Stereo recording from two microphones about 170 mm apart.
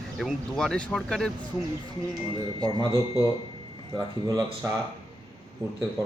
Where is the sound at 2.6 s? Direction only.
25° right (ahead or behind).